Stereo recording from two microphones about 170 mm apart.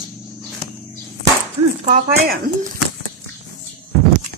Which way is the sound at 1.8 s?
40° right (ahead or behind).